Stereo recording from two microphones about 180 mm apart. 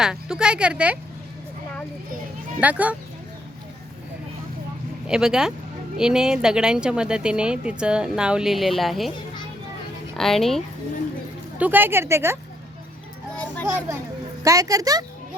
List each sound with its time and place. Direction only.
0.0 s speech: 5° right (ahead or behind)
2.6 s a woman's voice: 10° right (ahead or behind)
5.0 s speech: 5° right (ahead or behind)
10.2 s speech: centre (ahead or behind)
11.5 s a woman's voice: 10° right (ahead or behind)
13.3 s children playing: 5° left (ahead or behind)
13.7 s a woman's voice: 15° right (ahead or behind)